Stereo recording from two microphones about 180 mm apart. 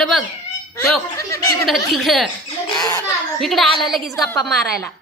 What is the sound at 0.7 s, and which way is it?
Speech, 15° left (ahead or behind).